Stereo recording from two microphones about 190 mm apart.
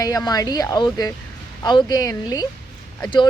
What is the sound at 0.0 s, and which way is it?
A woman's voice, 20° left (ahead or behind).